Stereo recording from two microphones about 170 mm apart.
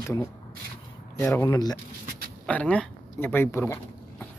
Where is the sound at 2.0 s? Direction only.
60° right (ahead or behind).